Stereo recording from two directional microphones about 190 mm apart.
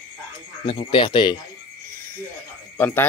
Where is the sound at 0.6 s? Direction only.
25° left (ahead or behind).